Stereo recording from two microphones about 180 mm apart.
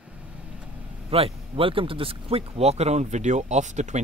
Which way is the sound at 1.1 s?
30° right (ahead or behind).